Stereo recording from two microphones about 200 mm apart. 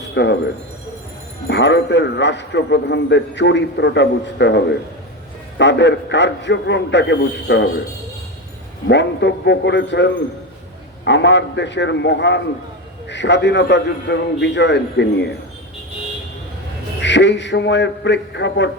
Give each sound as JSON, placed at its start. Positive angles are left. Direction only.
{"t": 0.1, "sound": "speech", "side_deg": 60}
{"t": 1.5, "sound": "a man's voice", "side_deg": 60}
{"t": 8.9, "sound": "a man's voice", "side_deg": 60}
{"t": 17.0, "sound": "a man's voice", "side_deg": 60}